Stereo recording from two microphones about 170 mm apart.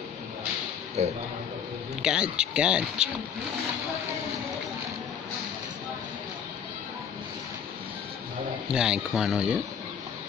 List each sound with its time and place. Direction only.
1.0 s speech: 40° right (ahead or behind)
2.0 s speech: 5° right (ahead or behind)
8.6 s speech: 5° right (ahead or behind)